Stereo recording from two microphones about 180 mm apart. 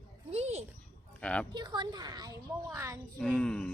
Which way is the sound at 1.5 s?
25° right (ahead or behind).